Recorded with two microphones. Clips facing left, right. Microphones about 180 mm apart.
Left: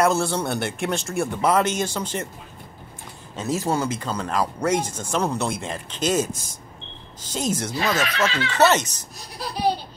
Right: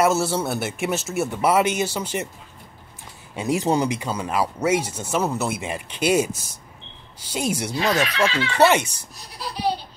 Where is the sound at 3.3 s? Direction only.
15° right (ahead or behind).